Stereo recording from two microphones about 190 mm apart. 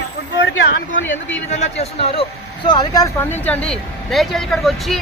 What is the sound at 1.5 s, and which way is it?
Speech, 35° left (ahead or behind).